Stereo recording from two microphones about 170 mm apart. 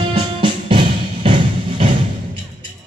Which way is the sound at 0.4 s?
30° right (ahead or behind).